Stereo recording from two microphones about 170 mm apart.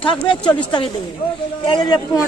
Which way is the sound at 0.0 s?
30° left (ahead or behind).